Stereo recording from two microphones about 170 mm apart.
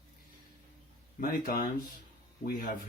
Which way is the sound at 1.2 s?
60° left (ahead or behind).